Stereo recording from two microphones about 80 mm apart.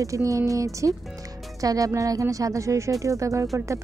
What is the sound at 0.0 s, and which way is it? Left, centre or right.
Speech, right.